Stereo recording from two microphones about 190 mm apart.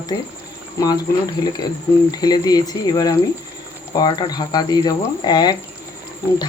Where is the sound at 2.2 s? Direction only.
20° left (ahead or behind).